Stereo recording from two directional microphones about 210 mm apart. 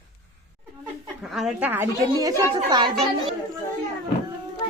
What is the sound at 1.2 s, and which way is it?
A woman's voice, centre (ahead or behind).